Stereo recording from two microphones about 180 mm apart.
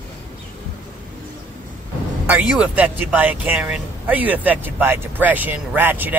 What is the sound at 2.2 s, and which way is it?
Speech, 5° right (ahead or behind).